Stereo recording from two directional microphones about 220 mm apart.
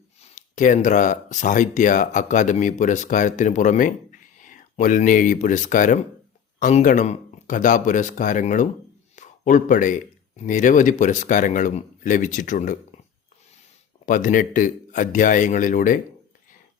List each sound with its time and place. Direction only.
0.2 s speech: 35° left (ahead or behind)
14.0 s speech: 35° left (ahead or behind)